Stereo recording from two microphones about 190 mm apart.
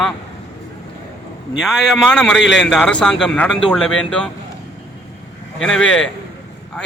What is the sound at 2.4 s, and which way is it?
Speech, 70° left (ahead or behind).